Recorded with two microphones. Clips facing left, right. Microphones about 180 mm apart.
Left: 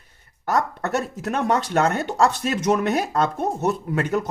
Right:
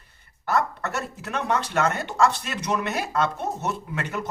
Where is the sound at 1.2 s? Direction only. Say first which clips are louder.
Left 3 dB; 45° left (ahead or behind).